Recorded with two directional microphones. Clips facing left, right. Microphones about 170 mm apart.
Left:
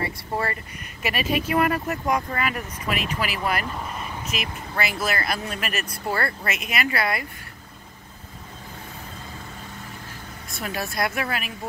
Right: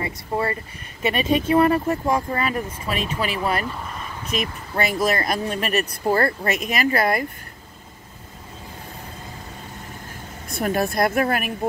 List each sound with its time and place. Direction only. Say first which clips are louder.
0.0 s speech: right 3 dB; 25° right (ahead or behind); by 7.2 s 45° right (ahead or behind)
10.6 s a woman's voice: right 7 dB; 50° right (ahead or behind)